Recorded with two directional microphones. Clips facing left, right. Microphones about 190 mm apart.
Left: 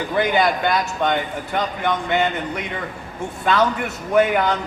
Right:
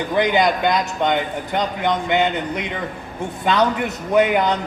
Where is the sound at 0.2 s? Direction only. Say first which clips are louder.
Right 1 dB; 20° right (ahead or behind).